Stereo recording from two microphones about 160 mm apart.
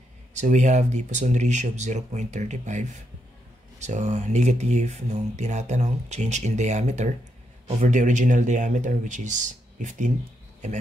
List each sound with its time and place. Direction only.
0.3 s speech: 45° right (ahead or behind)